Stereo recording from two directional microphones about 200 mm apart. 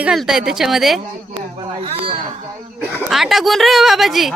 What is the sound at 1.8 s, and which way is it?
Speech, 30° right (ahead or behind).